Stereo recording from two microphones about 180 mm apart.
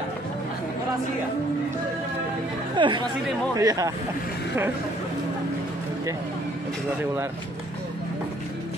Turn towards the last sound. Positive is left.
turn(degrees=-15)  # may be behind; listen again after turning